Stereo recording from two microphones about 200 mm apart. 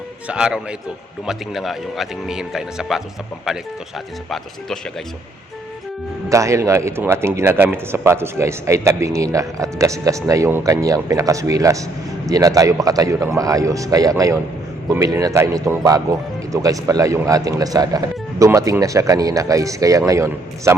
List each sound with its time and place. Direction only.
0.3 s speech: 5° right (ahead or behind)
6.2 s speech: 15° right (ahead or behind)